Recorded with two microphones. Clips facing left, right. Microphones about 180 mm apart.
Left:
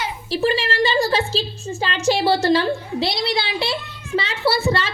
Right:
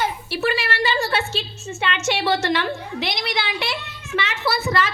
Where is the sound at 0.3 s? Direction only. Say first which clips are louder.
Left 3 dB; 30° left (ahead or behind).